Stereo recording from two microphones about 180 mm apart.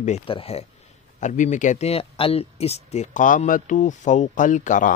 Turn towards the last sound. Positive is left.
turn(degrees=45)  # may be behind; listen again after turning